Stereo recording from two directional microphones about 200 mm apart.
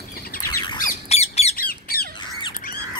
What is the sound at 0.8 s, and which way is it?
Squawk, 30° left (ahead or behind).